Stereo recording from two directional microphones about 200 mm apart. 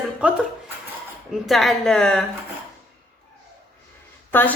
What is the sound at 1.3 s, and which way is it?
Speech, centre (ahead or behind).